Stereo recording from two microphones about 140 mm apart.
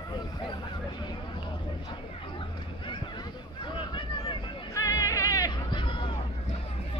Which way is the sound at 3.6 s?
35° left (ahead or behind).